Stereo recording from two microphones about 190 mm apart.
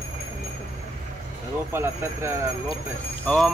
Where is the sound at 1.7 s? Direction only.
15° right (ahead or behind).